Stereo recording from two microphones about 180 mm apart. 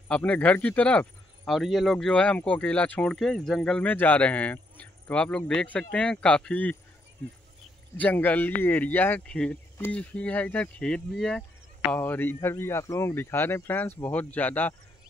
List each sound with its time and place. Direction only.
0.1 s speech: 5° left (ahead or behind)
8.0 s speech: 10° left (ahead or behind)